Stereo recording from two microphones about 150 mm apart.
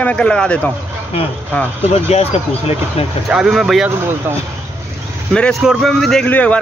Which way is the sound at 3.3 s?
5° right (ahead or behind).